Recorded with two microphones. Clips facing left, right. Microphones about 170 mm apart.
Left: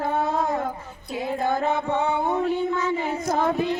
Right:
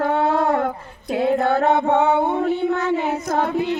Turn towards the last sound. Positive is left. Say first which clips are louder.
# right 2 dB
turn(degrees=-70)  # may be behind; listen again after turning